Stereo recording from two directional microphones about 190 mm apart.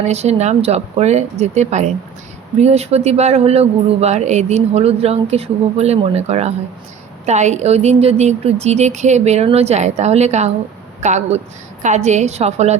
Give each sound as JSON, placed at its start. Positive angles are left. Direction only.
{"t": 0.0, "sound": "speech", "side_deg": -35}